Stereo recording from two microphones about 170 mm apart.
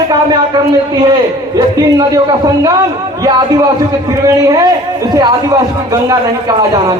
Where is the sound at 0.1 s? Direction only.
25° right (ahead or behind).